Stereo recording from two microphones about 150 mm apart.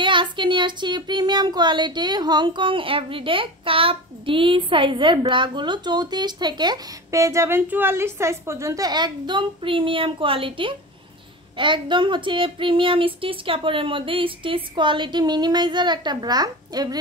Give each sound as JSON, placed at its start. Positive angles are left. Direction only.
{"t": 0.0, "sound": "speech", "side_deg": -30}